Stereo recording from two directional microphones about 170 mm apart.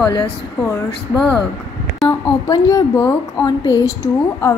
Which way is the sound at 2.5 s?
20° left (ahead or behind).